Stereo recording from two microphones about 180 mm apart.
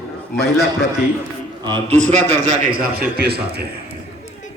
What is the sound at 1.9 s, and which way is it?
Speech, 40° right (ahead or behind).